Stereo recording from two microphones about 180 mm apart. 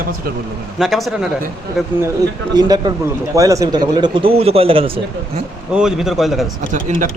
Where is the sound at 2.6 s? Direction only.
20° right (ahead or behind).